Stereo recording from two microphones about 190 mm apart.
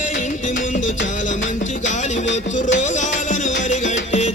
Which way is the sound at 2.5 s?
40° left (ahead or behind).